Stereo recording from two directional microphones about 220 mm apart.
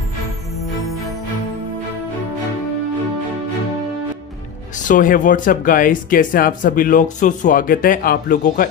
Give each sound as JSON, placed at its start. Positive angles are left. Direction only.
{"t": 4.8, "sound": "speech", "side_deg": 35}